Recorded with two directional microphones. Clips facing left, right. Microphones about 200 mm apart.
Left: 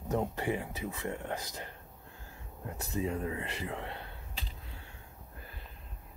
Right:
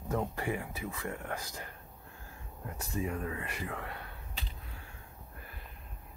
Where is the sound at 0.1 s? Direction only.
20° left (ahead or behind).